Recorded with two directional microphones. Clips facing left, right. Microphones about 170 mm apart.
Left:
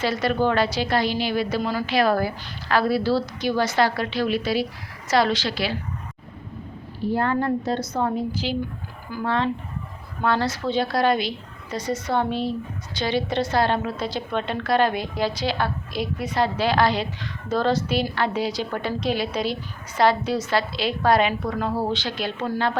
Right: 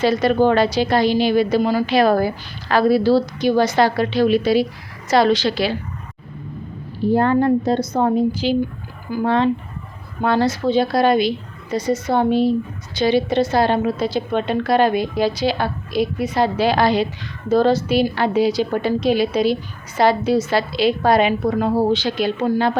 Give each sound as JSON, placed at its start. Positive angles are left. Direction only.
{"t": 0.0, "sound": "a woman's voice", "side_deg": -20}
{"t": 7.0, "sound": "a woman's voice", "side_deg": -25}